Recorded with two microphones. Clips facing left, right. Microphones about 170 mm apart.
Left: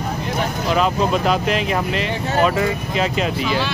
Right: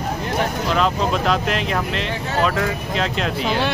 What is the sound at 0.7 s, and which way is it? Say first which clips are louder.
Speech: left 3 dB; 5° left (ahead or behind).